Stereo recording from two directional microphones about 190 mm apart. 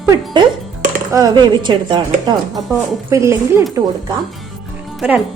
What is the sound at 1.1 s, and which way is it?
Speech, 20° right (ahead or behind).